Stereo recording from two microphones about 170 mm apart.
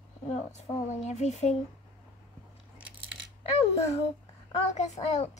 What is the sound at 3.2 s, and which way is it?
Coin, 90° right.